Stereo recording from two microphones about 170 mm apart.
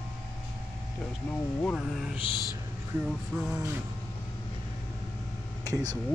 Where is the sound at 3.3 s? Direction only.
5° right (ahead or behind).